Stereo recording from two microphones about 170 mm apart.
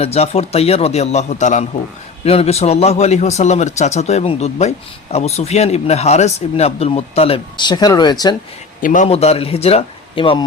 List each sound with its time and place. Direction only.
0.0 s speech: 35° left (ahead or behind)
8.8 s speech: 50° left (ahead or behind); by 10.4 s 30° left (ahead or behind)